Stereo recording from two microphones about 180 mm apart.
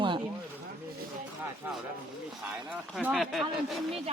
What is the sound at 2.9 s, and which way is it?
Speech, centre (ahead or behind).